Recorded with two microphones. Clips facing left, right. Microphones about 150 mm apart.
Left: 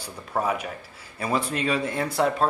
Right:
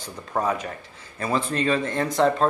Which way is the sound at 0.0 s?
10° left (ahead or behind).